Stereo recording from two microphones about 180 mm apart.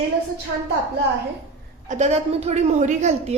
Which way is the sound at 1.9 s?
40° right (ahead or behind).